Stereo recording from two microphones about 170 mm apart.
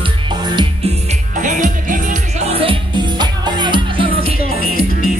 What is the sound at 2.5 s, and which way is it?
Music, 30° right (ahead or behind).